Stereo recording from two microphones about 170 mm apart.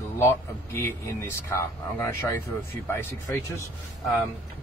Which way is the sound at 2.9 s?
15° left (ahead or behind).